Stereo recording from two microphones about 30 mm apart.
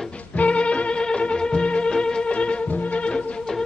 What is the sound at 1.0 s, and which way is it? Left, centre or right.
Music, left.